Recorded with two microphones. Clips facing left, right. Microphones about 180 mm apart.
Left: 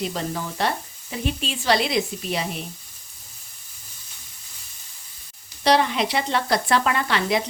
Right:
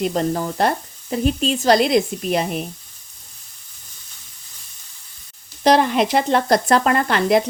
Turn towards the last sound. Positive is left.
turn(degrees=-50)  # may be behind; listen again after turning